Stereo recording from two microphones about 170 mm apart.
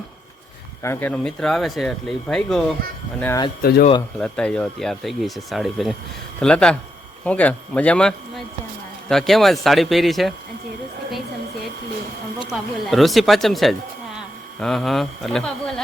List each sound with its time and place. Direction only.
0.8 s speech: 15° left (ahead or behind)
3.6 s speech: 65° left (ahead or behind)
4.2 s a man's voice: 5° left (ahead or behind)
12.5 s speech: centre (ahead or behind)